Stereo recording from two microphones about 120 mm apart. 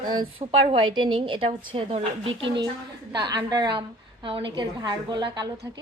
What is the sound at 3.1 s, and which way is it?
A woman's voice, 35° right (ahead or behind).